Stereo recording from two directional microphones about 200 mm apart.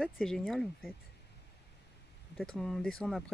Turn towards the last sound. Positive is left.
turn(degrees=0)  # may be behind; listen again after turning